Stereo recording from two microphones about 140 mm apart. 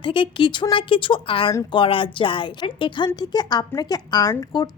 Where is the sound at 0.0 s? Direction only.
35° left (ahead or behind).